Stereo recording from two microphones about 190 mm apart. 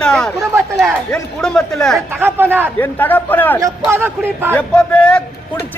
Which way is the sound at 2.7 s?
10° left (ahead or behind).